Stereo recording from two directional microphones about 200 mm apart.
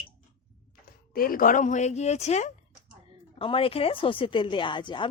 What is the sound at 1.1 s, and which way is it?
A woman's voice, 45° left (ahead or behind).